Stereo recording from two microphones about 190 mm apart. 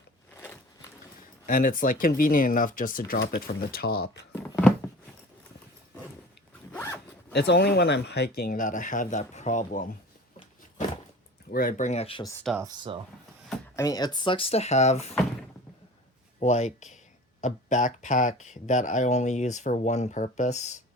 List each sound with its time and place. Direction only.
0.4 s a sound: 15° left (ahead or behind)
1.5 s speech: 45° left (ahead or behind)
6.7 s zipper: 15° left (ahead or behind)
7.3 s speech: 60° left (ahead or behind); by 9.9 s 40° left (ahead or behind)
11.5 s speech: 45° left (ahead or behind); by 12.3 s 30° left (ahead or behind)
12.5 s speech: 20° right (ahead or behind)
13.7 s speech: 20° left (ahead or behind); by 15.1 s 35° left (ahead or behind)
16.4 s speech: 35° left (ahead or behind)